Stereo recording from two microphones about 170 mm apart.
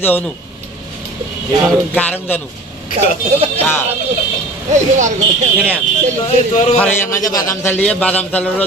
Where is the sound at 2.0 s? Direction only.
10° left (ahead or behind).